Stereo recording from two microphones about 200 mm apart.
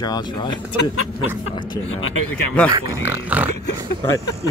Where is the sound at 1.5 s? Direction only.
25° left (ahead or behind).